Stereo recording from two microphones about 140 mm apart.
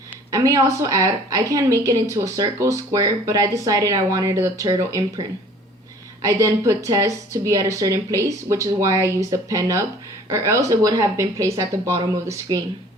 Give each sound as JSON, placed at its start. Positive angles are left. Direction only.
{"t": 0.3, "sound": "a woman's voice", "side_deg": -25}
{"t": 6.2, "sound": "a woman's voice", "side_deg": -20}